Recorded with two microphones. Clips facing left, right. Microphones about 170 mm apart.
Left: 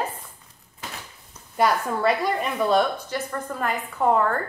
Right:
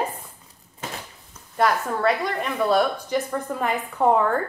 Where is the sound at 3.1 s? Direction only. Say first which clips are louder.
Right 4 dB; 5° right (ahead or behind).